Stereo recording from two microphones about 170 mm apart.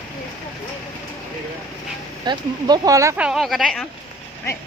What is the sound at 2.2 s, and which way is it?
Speech, 25° right (ahead or behind).